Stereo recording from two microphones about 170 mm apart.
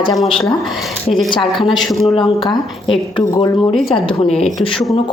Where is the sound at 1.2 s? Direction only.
30° left (ahead or behind).